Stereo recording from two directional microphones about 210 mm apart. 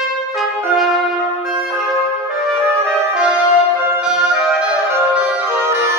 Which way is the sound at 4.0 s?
5° right (ahead or behind).